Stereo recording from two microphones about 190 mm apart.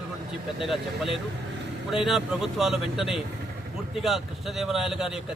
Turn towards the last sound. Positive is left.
turn(degrees=0)  # may be behind; listen again after turning